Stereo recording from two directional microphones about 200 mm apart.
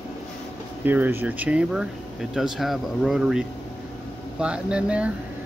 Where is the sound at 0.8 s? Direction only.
10° right (ahead or behind).